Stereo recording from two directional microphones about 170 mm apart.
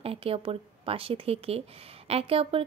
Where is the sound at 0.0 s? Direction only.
35° right (ahead or behind).